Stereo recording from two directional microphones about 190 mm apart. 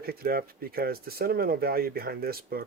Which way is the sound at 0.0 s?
50° right (ahead or behind).